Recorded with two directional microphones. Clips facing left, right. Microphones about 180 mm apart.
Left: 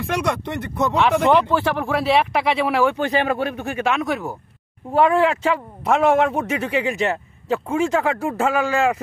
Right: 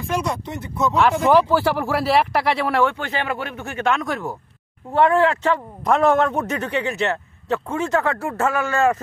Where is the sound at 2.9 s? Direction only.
15° left (ahead or behind).